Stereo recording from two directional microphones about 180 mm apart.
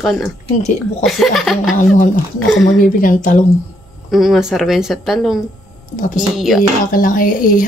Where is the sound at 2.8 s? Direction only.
50° left (ahead or behind).